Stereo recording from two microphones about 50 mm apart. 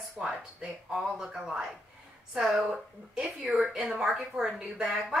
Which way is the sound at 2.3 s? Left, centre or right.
Centre.